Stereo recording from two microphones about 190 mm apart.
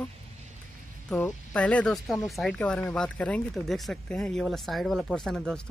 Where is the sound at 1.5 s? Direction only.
5° left (ahead or behind).